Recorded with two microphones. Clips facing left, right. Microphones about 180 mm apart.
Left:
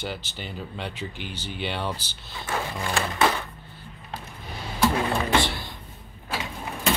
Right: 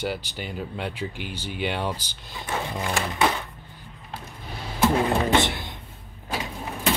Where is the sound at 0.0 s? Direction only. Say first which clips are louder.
Right 4 dB; 10° right (ahead or behind).